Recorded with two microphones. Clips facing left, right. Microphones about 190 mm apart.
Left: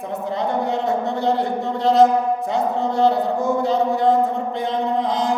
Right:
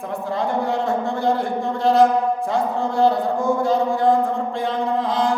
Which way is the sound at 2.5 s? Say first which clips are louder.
Left 1 dB; 20° left (ahead or behind).